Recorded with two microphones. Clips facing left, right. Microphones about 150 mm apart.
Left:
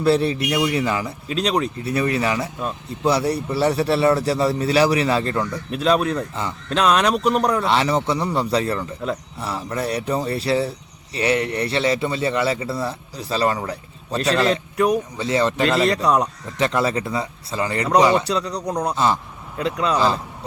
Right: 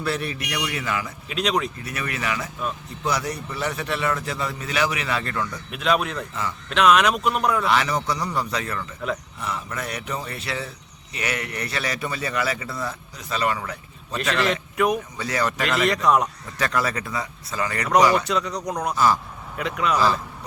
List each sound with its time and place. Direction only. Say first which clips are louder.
0.0 s a man's voice: left 9 dB; 30° left (ahead or behind)